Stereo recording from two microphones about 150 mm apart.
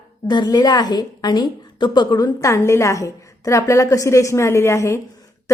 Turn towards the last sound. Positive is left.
turn(degrees=20)  # may be behind; listen again after turning